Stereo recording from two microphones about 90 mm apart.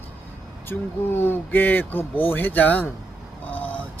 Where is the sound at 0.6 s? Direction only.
25° left (ahead or behind).